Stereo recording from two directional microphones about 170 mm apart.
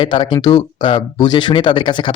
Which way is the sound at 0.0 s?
30° left (ahead or behind).